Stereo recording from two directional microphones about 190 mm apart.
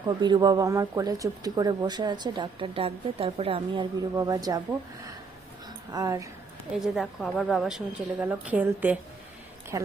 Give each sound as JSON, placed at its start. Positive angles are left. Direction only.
{"t": 0.2, "sound": "speech", "side_deg": -20}
{"t": 5.9, "sound": "a woman's voice", "side_deg": -20}
{"t": 6.7, "sound": "a woman's voice", "side_deg": 0}